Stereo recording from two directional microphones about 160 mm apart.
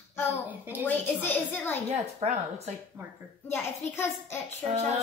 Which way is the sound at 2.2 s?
45° right (ahead or behind).